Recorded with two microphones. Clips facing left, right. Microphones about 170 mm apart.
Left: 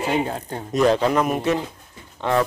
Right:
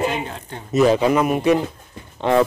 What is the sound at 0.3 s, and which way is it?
Speech, 40° left (ahead or behind).